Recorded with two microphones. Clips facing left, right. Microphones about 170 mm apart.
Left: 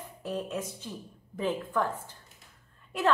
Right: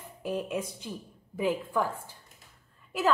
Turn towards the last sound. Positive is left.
turn(degrees=0)  # may be behind; listen again after turning